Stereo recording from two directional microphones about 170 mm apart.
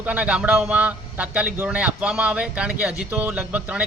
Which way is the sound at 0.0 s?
10° right (ahead or behind).